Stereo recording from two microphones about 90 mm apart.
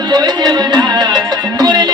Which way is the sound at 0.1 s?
50° right (ahead or behind).